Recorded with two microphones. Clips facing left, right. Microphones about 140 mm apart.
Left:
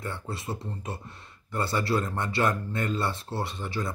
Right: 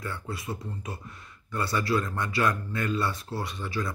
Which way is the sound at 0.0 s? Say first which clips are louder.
Even; 25° left (ahead or behind).